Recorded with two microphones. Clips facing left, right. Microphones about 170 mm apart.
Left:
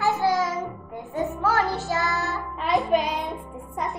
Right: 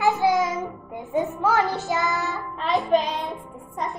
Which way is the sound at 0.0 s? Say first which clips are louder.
Right 2 dB; 20° right (ahead or behind).